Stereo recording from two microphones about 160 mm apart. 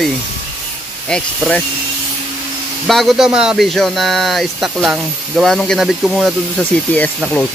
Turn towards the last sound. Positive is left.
turn(degrees=10)  # may be behind; listen again after turning